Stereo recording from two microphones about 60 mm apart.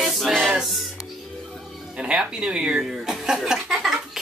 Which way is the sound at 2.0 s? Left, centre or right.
Centre.